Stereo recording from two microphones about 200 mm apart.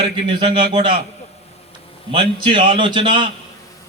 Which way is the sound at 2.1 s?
25° right (ahead or behind).